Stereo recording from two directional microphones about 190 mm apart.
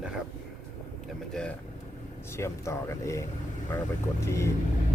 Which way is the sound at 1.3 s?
5° left (ahead or behind).